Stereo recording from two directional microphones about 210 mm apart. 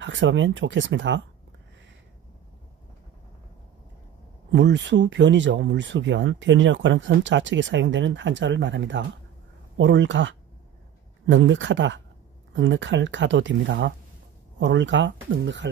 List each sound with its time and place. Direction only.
0.0 s speech: 60° right (ahead or behind)
4.5 s speech: 55° right (ahead or behind)